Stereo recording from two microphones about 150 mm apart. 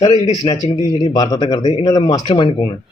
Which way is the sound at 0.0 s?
30° left (ahead or behind).